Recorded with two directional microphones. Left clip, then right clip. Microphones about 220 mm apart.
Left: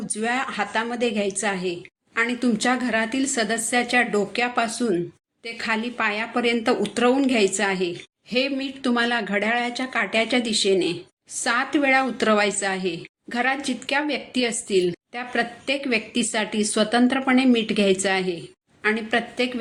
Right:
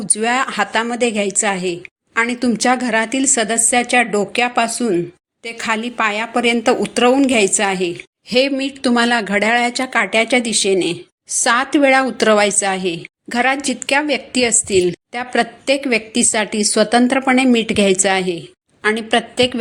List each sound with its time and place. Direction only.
0.2 s a woman's voice: 40° right (ahead or behind)